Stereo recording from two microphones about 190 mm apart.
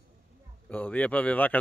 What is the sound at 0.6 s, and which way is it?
Speech, 10° left (ahead or behind).